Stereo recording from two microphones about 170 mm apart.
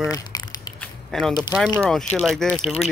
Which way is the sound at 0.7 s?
5° left (ahead or behind).